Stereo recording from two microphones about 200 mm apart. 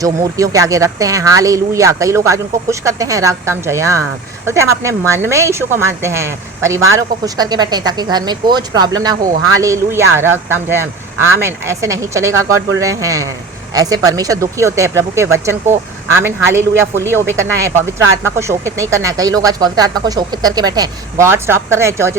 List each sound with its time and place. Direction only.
0.0 s speech: 15° right (ahead or behind)